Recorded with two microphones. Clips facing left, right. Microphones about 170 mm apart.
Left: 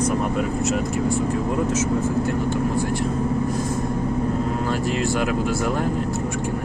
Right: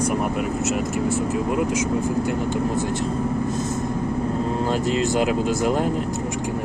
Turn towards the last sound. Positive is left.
turn(degrees=-20)  # may be behind; listen again after turning